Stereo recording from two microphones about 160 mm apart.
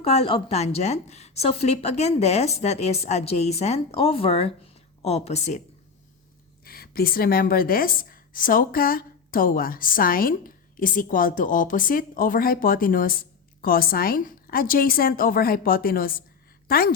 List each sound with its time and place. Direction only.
0.0 s a woman's voice: 40° left (ahead or behind)
6.7 s a woman's voice: 70° left (ahead or behind)